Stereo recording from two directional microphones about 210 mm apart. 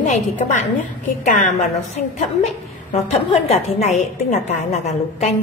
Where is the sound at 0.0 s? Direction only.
35° left (ahead or behind).